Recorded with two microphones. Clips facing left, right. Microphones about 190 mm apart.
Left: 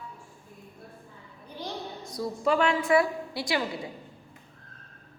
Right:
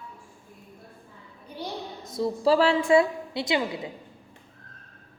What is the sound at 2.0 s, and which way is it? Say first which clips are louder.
A woman's voice: right 5 dB; 25° right (ahead or behind).